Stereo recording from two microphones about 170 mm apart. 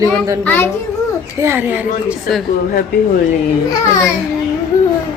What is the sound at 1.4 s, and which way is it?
Speech, 15° right (ahead or behind).